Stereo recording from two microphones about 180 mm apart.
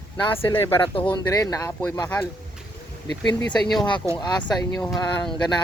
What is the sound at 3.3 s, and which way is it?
Speech, 25° left (ahead or behind).